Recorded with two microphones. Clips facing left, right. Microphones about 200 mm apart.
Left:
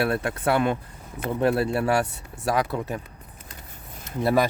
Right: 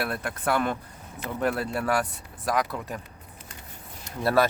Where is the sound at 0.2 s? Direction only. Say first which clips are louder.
Left 4 dB; 30° left (ahead or behind).